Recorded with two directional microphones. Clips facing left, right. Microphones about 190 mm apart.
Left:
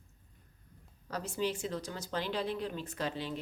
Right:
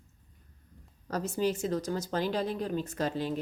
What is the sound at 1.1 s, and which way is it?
Speech, 45° right (ahead or behind).